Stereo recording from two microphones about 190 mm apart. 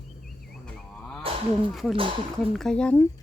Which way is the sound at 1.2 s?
30° right (ahead or behind).